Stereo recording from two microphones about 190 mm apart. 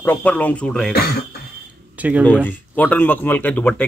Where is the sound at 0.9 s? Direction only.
55° left (ahead or behind).